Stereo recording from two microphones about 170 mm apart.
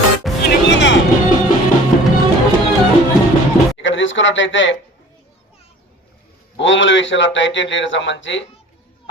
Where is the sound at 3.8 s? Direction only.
90° left.